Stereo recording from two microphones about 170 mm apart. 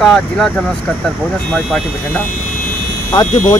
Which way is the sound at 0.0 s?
Centre (ahead or behind).